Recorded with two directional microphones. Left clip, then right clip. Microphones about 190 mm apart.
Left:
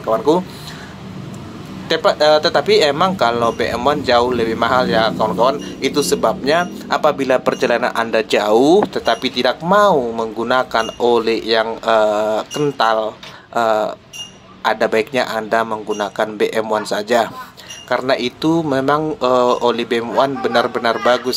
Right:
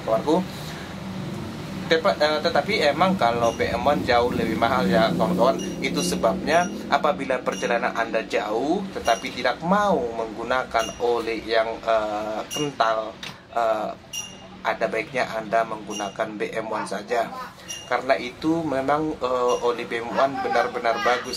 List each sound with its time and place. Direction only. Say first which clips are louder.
1.9 s speech: left 7 dB; 30° left (ahead or behind)